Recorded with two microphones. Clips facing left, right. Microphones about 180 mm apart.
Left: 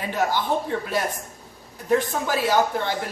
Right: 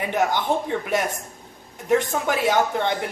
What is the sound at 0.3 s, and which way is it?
Speech, 20° right (ahead or behind).